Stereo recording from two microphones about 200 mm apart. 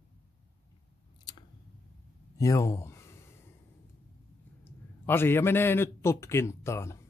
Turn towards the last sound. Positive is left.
turn(degrees=15)  # may be behind; listen again after turning